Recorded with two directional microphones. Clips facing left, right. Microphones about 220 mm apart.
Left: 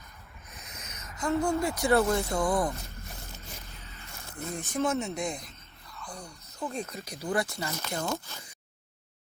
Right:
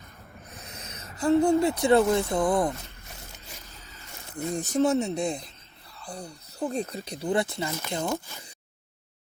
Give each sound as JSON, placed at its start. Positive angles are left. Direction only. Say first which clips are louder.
{"t": 0.5, "sound": "speech", "louder": "right 3 dB", "side_deg": -35}
{"t": 4.8, "sound": "speech", "louder": "right 5 dB", "side_deg": -35}